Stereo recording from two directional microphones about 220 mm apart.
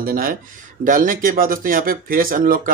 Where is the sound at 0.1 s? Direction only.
40° right (ahead or behind).